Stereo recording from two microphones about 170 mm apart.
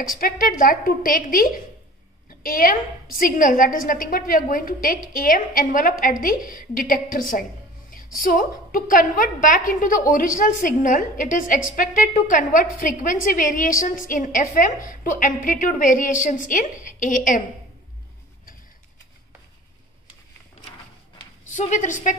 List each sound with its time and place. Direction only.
0.0 s a woman's voice: 55° left (ahead or behind)
21.5 s a woman's voice: 45° left (ahead or behind)